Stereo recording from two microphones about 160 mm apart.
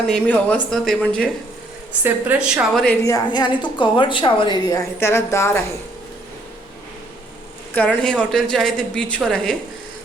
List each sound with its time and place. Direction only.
0.1 s speech: 10° left (ahead or behind)
2.0 s a woman's voice: 10° right (ahead or behind)
2.7 s speech: 10° left (ahead or behind)
3.0 s a woman's voice: 25° left (ahead or behind)
7.7 s a woman's voice: 10° left (ahead or behind)